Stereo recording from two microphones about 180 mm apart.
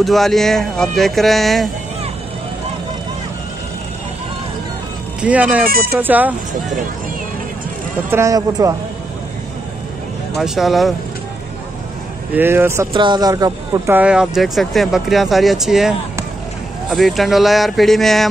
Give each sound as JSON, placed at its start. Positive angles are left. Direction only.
{"t": 0.0, "sound": "speech", "side_deg": 0}
{"t": 5.2, "sound": "speech", "side_deg": -10}
{"t": 5.7, "sound": "speech", "side_deg": -60}
{"t": 5.9, "sound": "speech", "side_deg": -10}
{"t": 8.1, "sound": "speech", "side_deg": -15}
{"t": 10.3, "sound": "speech", "side_deg": 0}
{"t": 12.4, "sound": "speech", "side_deg": -15}
{"t": 12.9, "sound": "speech", "side_deg": -25}
{"t": 13.9, "sound": "speech", "side_deg": -5}
{"t": 16.9, "sound": "speech", "side_deg": 0}